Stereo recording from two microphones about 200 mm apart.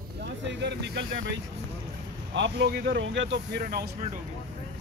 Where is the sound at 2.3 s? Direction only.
65° right (ahead or behind).